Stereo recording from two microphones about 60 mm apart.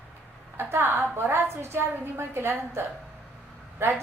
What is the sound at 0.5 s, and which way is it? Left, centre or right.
A woman's voice, right.